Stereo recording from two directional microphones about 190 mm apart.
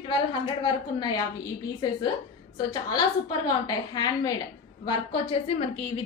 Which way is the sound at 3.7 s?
20° left (ahead or behind).